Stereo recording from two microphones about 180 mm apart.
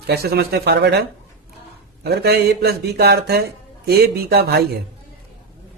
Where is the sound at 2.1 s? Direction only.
65° right (ahead or behind).